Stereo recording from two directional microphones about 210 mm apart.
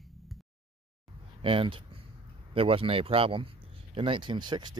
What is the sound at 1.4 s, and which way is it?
Speech, 25° right (ahead or behind).